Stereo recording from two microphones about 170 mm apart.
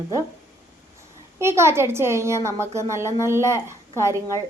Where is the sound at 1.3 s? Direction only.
15° right (ahead or behind).